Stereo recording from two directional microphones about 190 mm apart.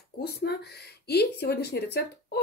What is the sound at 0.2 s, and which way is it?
Speech, 60° left (ahead or behind).